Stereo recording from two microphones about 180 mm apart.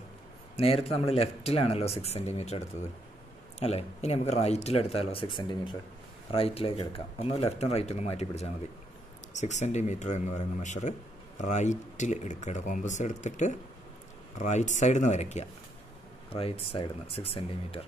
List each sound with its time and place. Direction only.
0.6 s speech: 35° left (ahead or behind)